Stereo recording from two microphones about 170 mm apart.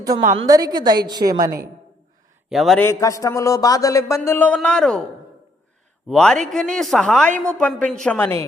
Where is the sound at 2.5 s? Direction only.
Centre (ahead or behind).